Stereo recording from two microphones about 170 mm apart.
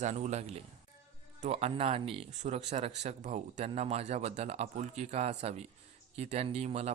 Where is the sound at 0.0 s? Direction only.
45° right (ahead or behind).